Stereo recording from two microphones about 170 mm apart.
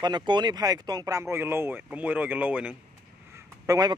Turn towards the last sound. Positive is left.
turn(degrees=-20)  # may be behind; listen again after turning